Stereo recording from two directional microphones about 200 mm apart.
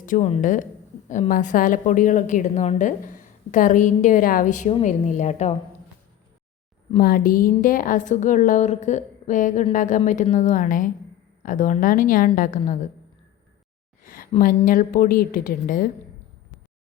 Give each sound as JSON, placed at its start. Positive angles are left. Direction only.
{"t": 0.0, "sound": "a woman's voice", "side_deg": 35}
{"t": 7.0, "sound": "a woman's voice", "side_deg": 45}
{"t": 14.1, "sound": "a woman's voice", "side_deg": 45}